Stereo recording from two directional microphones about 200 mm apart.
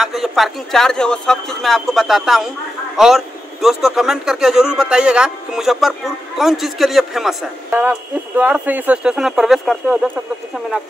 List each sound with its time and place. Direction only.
0.0 s a man's voice: centre (ahead or behind)